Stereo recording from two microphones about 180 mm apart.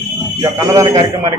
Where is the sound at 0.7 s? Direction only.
15° right (ahead or behind).